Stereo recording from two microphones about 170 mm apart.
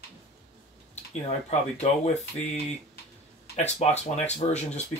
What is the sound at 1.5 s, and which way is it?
Speech, 40° left (ahead or behind).